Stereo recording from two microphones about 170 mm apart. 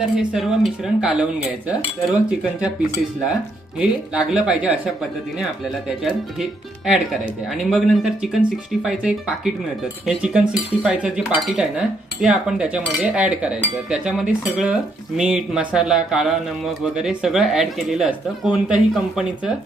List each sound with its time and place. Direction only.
0.0 s speech: centre (ahead or behind)
3.8 s speech: 5° right (ahead or behind)
6.0 s speech: 5° right (ahead or behind)